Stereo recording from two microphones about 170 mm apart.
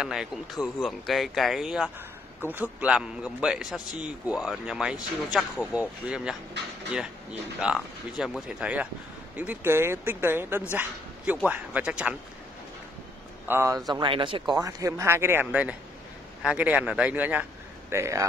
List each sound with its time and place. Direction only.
0.0 s speech: 5° right (ahead or behind)
7.6 s speech: centre (ahead or behind)
13.5 s speech: 15° right (ahead or behind)
14.6 s a man's voice: 20° right (ahead or behind)